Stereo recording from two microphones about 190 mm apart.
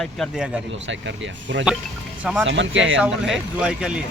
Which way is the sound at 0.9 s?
75° right (ahead or behind).